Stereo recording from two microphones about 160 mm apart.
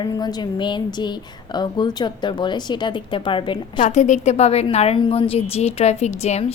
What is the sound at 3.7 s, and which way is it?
A woman's voice, 45° left (ahead or behind).